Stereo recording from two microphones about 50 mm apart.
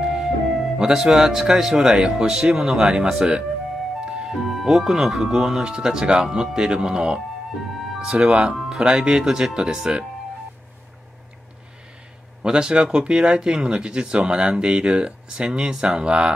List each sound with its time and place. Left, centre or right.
0.0 s music: centre
0.7 s speech: centre
12.4 s speech: centre